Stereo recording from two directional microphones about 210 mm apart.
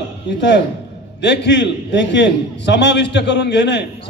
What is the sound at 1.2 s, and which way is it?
A man's voice, 55° left (ahead or behind).